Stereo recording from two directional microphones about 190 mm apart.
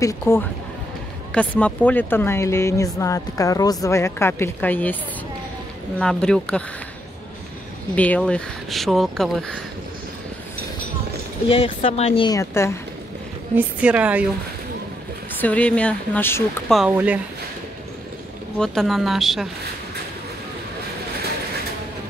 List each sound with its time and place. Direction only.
0.0 s speech: 15° left (ahead or behind)
5.9 s speech: 5° left (ahead or behind)
7.9 s speech: 5° left (ahead or behind)
11.4 s speech: 30° left (ahead or behind)
12.3 s speech: 15° left (ahead or behind)
13.6 s a woman's voice: 5° right (ahead or behind)
15.4 s speech: 5° left (ahead or behind)
16.7 s a woman's voice: 5° right (ahead or behind)
18.6 s speech: centre (ahead or behind)